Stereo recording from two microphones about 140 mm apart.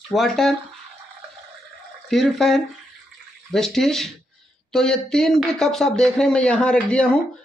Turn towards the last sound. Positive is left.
turn(degrees=10)  # may be behind; listen again after turning